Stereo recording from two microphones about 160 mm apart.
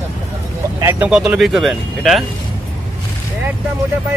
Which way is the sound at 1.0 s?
5° right (ahead or behind).